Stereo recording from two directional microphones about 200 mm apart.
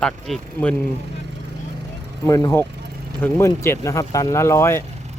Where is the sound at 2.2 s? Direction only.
15° left (ahead or behind).